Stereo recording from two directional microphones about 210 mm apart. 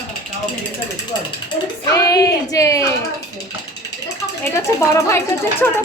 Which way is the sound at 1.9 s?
15° left (ahead or behind).